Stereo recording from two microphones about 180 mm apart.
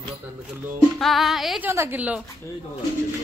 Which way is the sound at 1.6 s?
10° right (ahead or behind).